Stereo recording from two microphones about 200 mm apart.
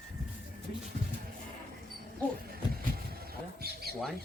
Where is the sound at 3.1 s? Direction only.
50° right (ahead or behind).